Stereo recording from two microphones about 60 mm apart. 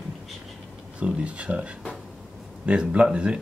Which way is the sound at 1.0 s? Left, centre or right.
Right.